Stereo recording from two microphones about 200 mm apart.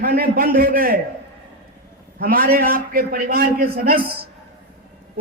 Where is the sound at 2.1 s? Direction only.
45° right (ahead or behind).